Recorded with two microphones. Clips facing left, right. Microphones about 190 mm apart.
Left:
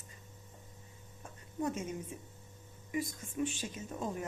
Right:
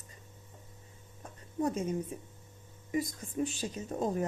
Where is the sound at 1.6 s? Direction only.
35° right (ahead or behind).